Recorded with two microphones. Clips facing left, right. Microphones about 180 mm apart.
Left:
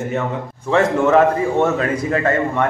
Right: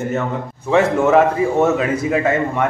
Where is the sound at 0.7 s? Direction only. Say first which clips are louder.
Right 1 dB; 5° right (ahead or behind).